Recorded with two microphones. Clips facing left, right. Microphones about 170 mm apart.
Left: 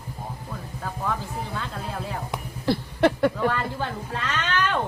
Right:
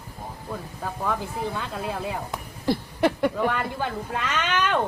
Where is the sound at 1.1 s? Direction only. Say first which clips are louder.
Right 4 dB; 15° right (ahead or behind).